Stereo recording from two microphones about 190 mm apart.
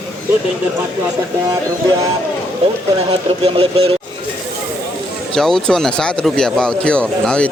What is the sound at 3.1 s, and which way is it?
Speech, 30° right (ahead or behind).